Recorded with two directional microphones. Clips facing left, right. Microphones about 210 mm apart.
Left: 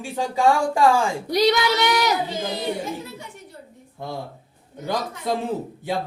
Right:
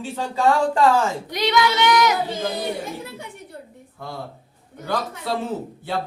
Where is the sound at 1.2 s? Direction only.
35° left (ahead or behind).